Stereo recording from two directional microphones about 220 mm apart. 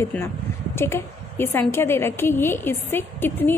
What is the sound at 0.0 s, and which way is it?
A woman's voice, 10° left (ahead or behind).